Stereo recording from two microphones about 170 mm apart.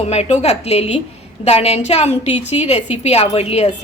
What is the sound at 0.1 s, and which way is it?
A woman's voice, 40° left (ahead or behind).